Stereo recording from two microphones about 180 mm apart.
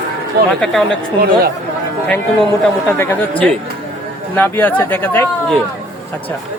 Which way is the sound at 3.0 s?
15° left (ahead or behind).